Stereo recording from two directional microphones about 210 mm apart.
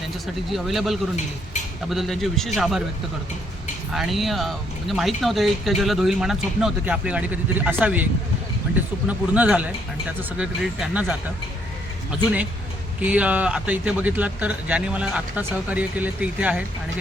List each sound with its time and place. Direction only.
0.5 s speech: centre (ahead or behind)
3.9 s speech: centre (ahead or behind)
13.0 s speech: 5° right (ahead or behind)